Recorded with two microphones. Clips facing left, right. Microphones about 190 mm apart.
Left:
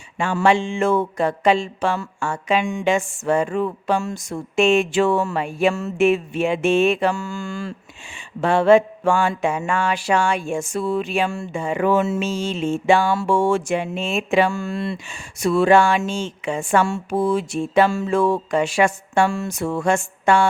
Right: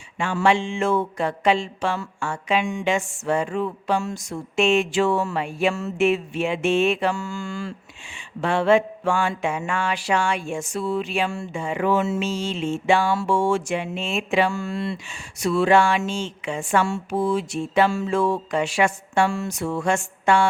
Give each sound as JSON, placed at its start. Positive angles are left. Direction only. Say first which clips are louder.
{"t": 0.2, "sound": "mantra", "louder": "left 2 dB", "side_deg": 45}